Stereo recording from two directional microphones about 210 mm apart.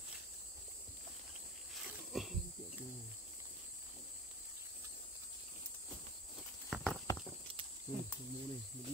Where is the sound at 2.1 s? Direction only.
Centre (ahead or behind).